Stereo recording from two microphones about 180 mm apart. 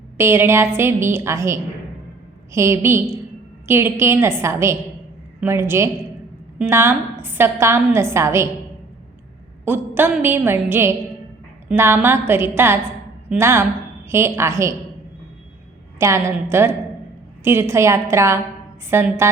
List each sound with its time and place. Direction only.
0.2 s a woman's voice: 15° right (ahead or behind)
9.6 s a woman's voice: 10° right (ahead or behind)
16.0 s a woman's voice: 15° right (ahead or behind)